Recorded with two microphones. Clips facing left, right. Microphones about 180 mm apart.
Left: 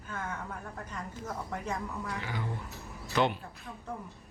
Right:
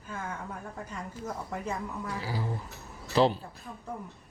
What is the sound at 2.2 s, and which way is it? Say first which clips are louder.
Speech: right 3 dB; 35° right (ahead or behind).